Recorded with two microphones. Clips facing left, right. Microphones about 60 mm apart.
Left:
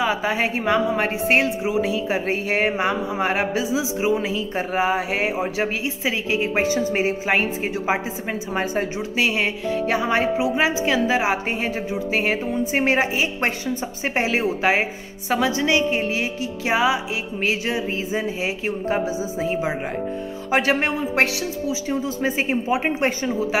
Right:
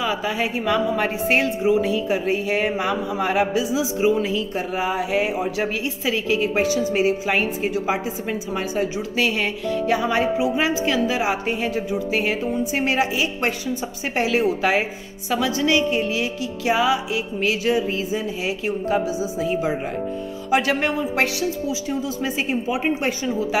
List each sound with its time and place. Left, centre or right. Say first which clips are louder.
0.0 s a woman's voice: left 2 dB; left